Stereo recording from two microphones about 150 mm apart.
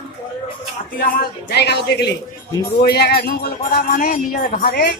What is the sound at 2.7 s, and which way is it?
Speech, 90° left.